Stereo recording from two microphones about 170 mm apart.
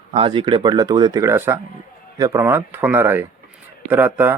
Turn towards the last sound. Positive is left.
turn(degrees=-10)  # may be behind; listen again after turning